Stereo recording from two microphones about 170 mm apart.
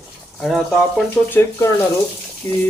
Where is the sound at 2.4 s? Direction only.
15° left (ahead or behind).